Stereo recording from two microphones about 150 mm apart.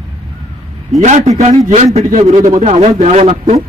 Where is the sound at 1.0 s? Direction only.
50° right (ahead or behind).